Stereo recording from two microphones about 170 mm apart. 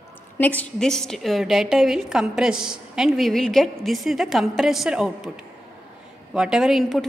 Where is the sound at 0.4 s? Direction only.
10° left (ahead or behind).